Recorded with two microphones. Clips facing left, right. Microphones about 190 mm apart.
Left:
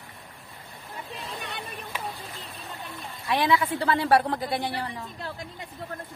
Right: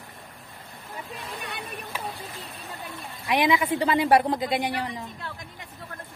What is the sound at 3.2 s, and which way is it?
A woman's voice, 15° right (ahead or behind).